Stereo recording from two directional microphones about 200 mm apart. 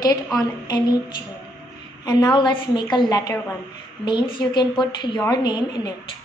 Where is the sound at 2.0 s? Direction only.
20° left (ahead or behind).